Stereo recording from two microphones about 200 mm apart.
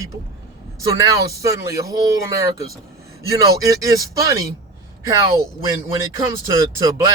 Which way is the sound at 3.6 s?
15° right (ahead or behind).